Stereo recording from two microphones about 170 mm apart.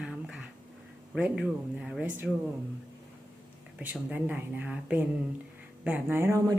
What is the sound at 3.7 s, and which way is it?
Speech, 10° right (ahead or behind).